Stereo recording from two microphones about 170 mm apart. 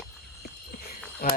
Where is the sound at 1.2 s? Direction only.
60° left (ahead or behind).